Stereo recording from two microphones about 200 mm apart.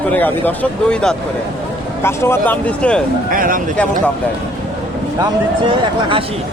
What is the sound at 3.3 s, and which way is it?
Speech, 45° right (ahead or behind).